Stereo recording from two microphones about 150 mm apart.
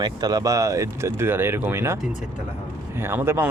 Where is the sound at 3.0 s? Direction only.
15° right (ahead or behind).